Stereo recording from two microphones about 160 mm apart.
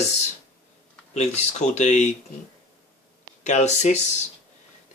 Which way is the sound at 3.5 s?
45° left (ahead or behind).